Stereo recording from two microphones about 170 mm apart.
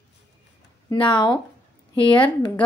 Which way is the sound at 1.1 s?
25° left (ahead or behind).